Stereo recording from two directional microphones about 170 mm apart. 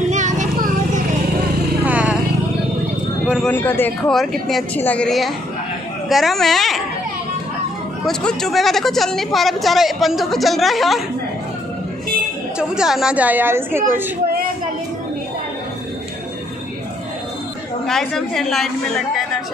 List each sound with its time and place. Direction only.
0.1 s children playing: 45° right (ahead or behind)
1.9 s vehicle: 10° right (ahead or behind)
3.4 s a man's voice: 10° left (ahead or behind)
4.1 s a woman's voice: centre (ahead or behind)
8.0 s a woman's voice: 5° left (ahead or behind)
12.5 s a woman's voice: 5° right (ahead or behind)
17.8 s a woman's voice: centre (ahead or behind)